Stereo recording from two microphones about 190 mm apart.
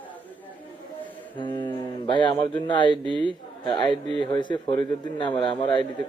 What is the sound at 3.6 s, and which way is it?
Speech, 25° left (ahead or behind).